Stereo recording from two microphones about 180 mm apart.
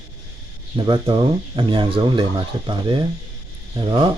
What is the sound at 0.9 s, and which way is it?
Speech, 25° right (ahead or behind).